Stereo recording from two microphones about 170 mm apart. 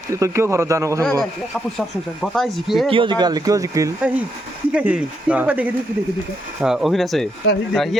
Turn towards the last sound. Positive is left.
turn(degrees=75)  # may be behind; listen again after turning